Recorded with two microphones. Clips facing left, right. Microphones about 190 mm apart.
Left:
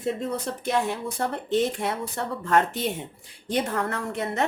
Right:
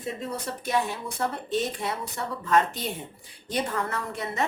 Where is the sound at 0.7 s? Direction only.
65° left (ahead or behind).